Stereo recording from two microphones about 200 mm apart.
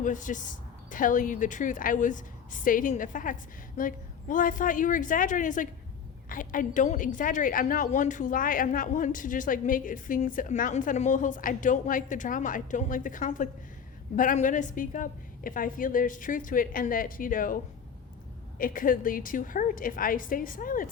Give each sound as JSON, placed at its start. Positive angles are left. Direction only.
{"t": 0.0, "sound": "a woman's voice", "side_deg": 40}
{"t": 18.6, "sound": "a woman's voice", "side_deg": 45}